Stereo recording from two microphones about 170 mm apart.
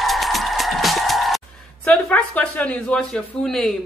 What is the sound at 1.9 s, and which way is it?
Speech, 5° left (ahead or behind).